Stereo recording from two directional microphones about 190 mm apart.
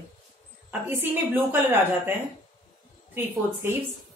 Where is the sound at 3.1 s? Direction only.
10° right (ahead or behind).